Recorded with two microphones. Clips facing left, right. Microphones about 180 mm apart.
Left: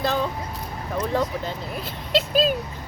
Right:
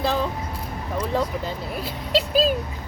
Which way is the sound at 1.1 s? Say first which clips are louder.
Right 1 dB; 5° right (ahead or behind).